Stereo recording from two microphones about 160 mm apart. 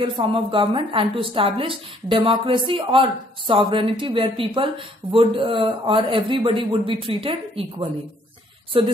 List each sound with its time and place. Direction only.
0.0 s a woman's voice: 35° right (ahead or behind)
8.7 s a woman's voice: 35° right (ahead or behind)